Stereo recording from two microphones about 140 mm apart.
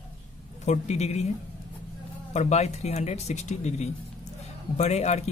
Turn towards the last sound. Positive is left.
turn(degrees=50)  # may be behind; listen again after turning